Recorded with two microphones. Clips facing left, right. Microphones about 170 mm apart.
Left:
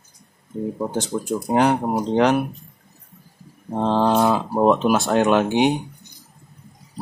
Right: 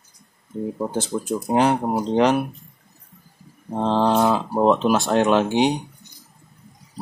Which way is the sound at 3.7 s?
5° left (ahead or behind).